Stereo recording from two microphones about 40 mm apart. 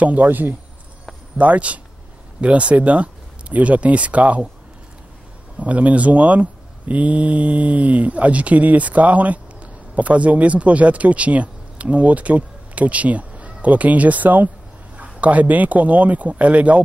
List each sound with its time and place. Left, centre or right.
0.0 s a man's voice: right
1.4 s speech: right
5.6 s speech: right